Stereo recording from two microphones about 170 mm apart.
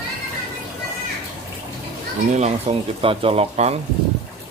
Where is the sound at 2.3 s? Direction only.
35° right (ahead or behind).